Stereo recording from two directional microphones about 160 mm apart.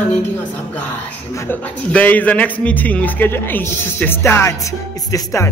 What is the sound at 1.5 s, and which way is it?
A man's voice, 10° left (ahead or behind).